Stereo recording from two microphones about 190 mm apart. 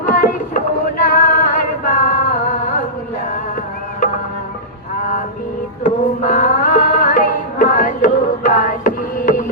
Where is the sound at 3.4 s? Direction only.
45° left (ahead or behind).